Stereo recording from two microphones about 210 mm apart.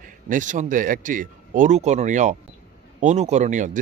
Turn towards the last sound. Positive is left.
turn(degrees=-35)  # may be behind; listen again after turning